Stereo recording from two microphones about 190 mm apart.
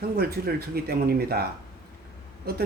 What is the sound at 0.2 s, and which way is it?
Speech, 55° right (ahead or behind).